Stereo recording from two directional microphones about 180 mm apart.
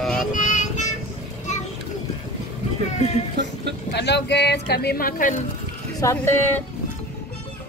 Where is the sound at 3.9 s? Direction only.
70° left (ahead or behind); by 5.4 s 50° left (ahead or behind).